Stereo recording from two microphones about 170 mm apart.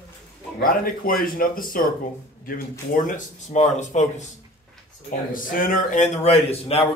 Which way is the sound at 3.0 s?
45° left (ahead or behind).